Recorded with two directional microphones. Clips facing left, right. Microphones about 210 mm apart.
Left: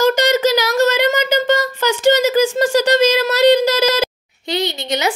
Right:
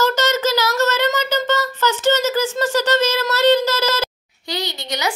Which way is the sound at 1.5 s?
15° left (ahead or behind).